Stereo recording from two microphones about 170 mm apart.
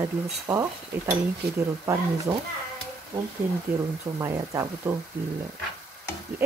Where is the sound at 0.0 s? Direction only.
20° right (ahead or behind).